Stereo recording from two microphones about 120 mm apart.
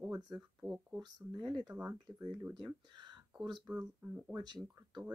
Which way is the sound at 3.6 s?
10° right (ahead or behind).